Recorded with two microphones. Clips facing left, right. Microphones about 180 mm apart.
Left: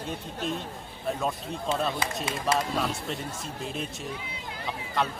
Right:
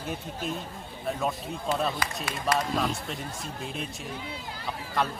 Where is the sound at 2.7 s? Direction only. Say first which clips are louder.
Even; centre (ahead or behind).